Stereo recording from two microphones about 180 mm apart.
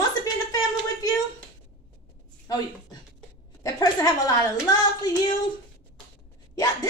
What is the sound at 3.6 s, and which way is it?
Speech, 20° left (ahead or behind).